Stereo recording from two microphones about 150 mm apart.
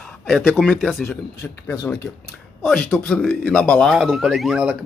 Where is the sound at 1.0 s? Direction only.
20° left (ahead or behind).